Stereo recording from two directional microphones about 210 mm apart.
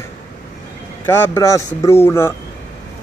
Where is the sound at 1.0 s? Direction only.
10° left (ahead or behind).